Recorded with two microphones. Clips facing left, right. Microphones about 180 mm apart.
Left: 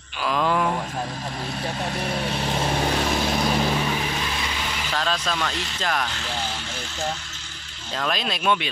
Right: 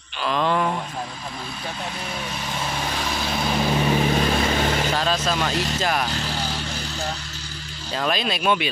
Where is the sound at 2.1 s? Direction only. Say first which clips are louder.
Left 5 dB; 35° left (ahead or behind).